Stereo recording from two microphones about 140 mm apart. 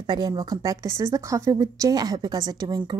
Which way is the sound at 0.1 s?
30° right (ahead or behind).